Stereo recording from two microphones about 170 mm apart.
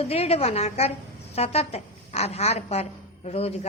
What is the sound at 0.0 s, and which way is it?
A woman's voice, 35° left (ahead or behind).